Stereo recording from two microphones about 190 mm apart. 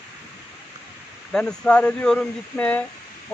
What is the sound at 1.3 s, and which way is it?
Speech, 5° left (ahead or behind).